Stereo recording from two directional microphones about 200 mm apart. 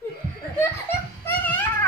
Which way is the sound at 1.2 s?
10° left (ahead or behind).